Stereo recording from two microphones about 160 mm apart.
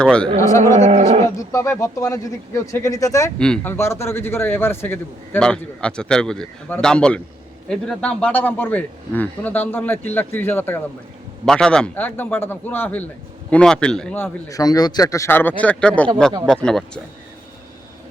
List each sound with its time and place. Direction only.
0.0 s speech: 5° left (ahead or behind)
0.3 s speech: 20° left (ahead or behind)
0.8 s speech: 45° right (ahead or behind)
1.4 s speech: 20° left (ahead or behind)
3.3 s a man's voice: 5° left (ahead or behind)
14.5 s a man's voice: 25° left (ahead or behind); by 17.0 s 5° left (ahead or behind)